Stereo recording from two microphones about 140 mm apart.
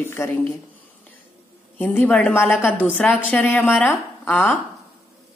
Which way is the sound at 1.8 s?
10° left (ahead or behind).